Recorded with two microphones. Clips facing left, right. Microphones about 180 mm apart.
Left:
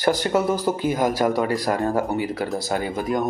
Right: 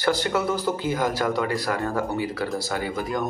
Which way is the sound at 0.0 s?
15° left (ahead or behind).